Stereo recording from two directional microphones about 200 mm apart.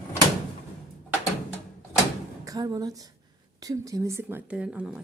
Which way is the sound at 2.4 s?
15° right (ahead or behind).